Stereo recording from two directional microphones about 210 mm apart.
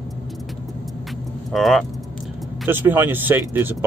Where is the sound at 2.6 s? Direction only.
10° right (ahead or behind).